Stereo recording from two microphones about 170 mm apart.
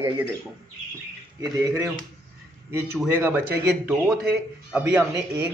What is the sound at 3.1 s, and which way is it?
Speech, 15° right (ahead or behind).